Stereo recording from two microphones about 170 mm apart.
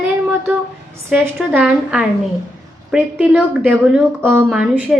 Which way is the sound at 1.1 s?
10° right (ahead or behind).